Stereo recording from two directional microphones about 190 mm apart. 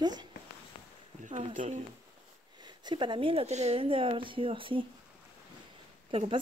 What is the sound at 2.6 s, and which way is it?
Speech, 25° right (ahead or behind).